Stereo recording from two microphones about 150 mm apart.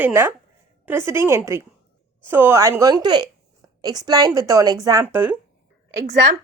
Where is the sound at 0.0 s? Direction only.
15° right (ahead or behind).